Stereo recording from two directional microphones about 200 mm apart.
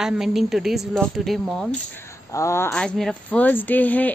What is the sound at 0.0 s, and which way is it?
Speech, centre (ahead or behind).